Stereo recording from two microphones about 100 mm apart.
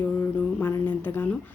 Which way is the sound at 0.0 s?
20° left (ahead or behind).